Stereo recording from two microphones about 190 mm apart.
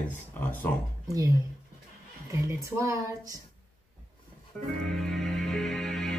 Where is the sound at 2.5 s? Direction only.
15° right (ahead or behind).